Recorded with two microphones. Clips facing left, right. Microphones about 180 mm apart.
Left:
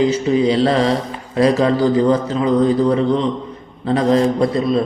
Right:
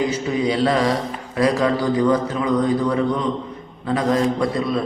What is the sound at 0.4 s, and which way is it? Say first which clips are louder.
A man's voice: left 1 dB; 25° left (ahead or behind).